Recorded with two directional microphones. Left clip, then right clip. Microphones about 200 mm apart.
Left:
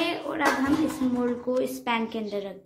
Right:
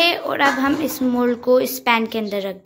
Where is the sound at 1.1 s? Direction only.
30° right (ahead or behind).